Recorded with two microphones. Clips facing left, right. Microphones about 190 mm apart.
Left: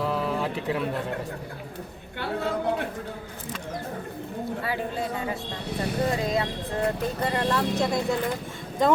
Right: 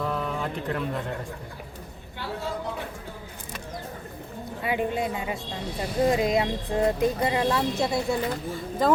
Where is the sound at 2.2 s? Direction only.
60° left (ahead or behind).